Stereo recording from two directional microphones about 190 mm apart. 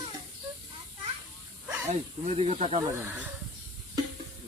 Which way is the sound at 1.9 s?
35° right (ahead or behind).